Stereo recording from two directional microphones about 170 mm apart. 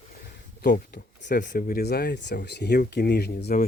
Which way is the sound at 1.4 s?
60° left (ahead or behind).